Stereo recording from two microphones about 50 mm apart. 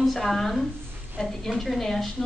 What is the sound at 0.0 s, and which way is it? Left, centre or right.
A woman's voice, centre.